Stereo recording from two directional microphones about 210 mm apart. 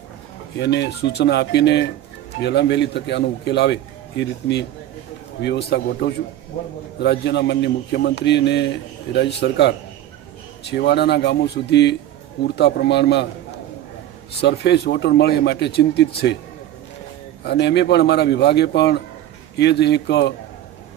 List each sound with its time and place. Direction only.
0.6 s a man's voice: 55° left (ahead or behind)
14.4 s speech: 50° left (ahead or behind)
17.4 s a man's voice: 55° left (ahead or behind)